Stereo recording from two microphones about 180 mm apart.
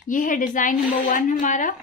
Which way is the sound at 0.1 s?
50° left (ahead or behind).